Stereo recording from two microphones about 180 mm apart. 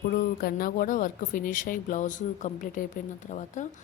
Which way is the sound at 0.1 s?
55° left (ahead or behind).